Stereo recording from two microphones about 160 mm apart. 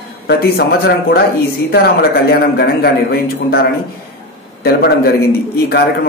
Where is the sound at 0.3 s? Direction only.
75° left (ahead or behind).